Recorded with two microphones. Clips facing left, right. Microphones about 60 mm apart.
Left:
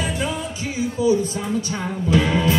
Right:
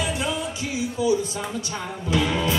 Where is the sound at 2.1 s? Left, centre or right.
Left.